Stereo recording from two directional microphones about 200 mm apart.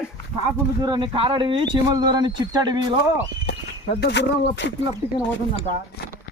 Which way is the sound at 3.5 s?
55° left (ahead or behind).